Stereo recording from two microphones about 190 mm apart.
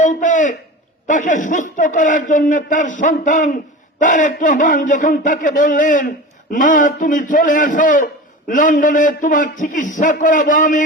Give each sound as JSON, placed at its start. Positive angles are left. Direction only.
{"t": 0.0, "sound": "a man's voice", "side_deg": 40}